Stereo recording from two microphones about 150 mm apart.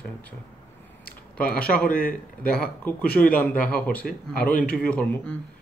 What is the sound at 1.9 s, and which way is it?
Speech, 70° left (ahead or behind).